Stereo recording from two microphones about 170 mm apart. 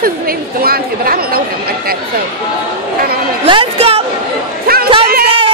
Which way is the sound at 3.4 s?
30° right (ahead or behind).